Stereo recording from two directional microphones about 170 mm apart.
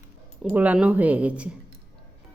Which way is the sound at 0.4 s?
10° right (ahead or behind).